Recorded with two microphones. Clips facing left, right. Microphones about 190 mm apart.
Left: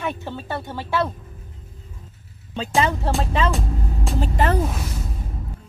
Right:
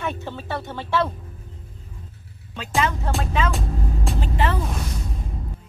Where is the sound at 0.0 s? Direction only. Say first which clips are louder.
Left 1 dB; 10° left (ahead or behind).